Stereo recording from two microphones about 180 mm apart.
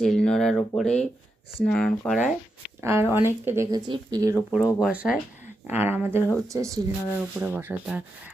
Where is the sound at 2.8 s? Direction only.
15° right (ahead or behind).